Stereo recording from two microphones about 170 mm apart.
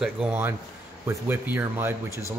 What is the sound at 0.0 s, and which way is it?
Speech, 5° right (ahead or behind).